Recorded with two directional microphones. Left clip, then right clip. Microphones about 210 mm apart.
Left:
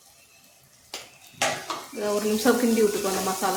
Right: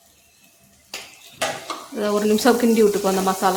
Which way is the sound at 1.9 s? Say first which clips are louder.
Right 6 dB; 45° right (ahead or behind).